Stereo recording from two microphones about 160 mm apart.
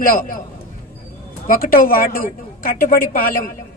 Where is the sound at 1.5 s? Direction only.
60° left (ahead or behind).